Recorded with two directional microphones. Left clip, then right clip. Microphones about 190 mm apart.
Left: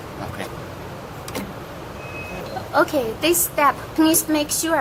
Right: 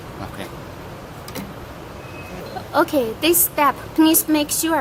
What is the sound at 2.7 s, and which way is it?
A woman's voice, 45° right (ahead or behind).